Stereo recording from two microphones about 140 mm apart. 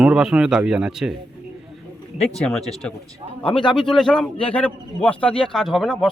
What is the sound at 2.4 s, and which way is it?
Speech, 5° left (ahead or behind).